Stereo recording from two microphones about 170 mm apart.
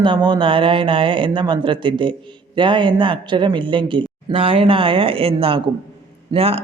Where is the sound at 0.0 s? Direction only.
30° right (ahead or behind).